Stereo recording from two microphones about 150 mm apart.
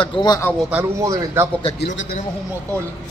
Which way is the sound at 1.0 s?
25° right (ahead or behind).